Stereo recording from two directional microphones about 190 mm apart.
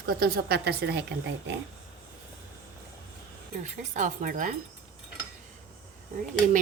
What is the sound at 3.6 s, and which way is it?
Speech, 40° right (ahead or behind).